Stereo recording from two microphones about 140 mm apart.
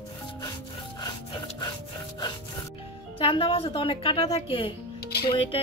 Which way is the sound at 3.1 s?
40° left (ahead or behind).